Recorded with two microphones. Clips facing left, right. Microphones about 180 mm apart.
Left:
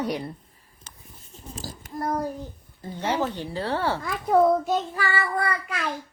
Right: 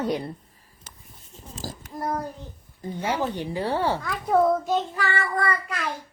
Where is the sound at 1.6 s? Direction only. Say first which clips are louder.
Right 5 dB; 45° right (ahead or behind).